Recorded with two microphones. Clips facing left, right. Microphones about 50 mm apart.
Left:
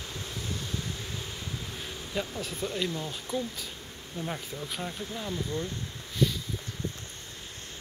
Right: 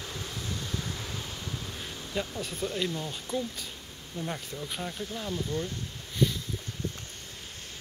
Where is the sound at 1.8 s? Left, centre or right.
Centre.